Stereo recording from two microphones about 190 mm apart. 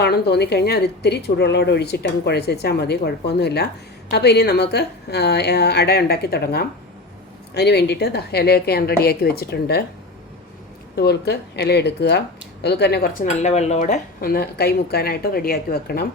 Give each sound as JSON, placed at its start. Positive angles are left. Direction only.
{"t": 0.0, "sound": "a woman's voice", "side_deg": 60}
{"t": 10.9, "sound": "a woman's voice", "side_deg": 60}
{"t": 13.2, "sound": "speech", "side_deg": 35}